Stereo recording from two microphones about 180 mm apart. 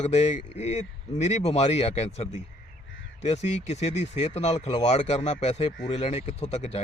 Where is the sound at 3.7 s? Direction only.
35° left (ahead or behind).